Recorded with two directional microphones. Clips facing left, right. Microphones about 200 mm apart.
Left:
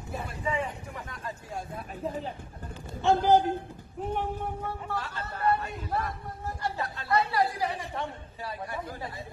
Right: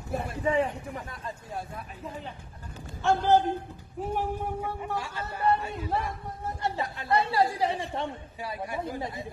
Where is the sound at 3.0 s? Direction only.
15° left (ahead or behind).